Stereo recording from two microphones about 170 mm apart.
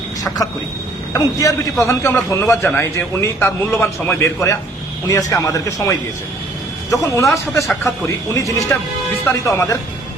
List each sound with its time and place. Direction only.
1.1 s a man's voice: 20° left (ahead or behind)